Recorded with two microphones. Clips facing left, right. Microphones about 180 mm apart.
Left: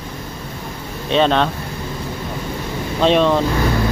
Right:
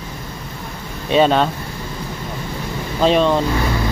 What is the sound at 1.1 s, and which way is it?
Speech, 5° right (ahead or behind).